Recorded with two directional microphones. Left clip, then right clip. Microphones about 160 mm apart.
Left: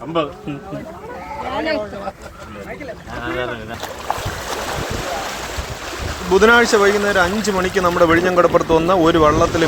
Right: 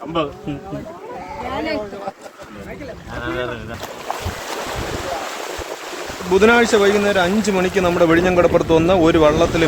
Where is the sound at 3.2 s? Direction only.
35° right (ahead or behind).